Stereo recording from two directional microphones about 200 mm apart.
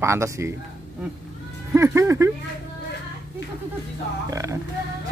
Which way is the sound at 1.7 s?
15° right (ahead or behind).